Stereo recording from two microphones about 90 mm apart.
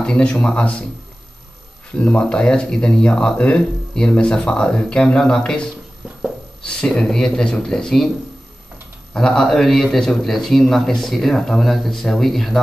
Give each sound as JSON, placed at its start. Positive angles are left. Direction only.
{"t": 0.0, "sound": "speech", "side_deg": 10}
{"t": 2.0, "sound": "a man's voice", "side_deg": 10}
{"t": 9.1, "sound": "a man's voice", "side_deg": 5}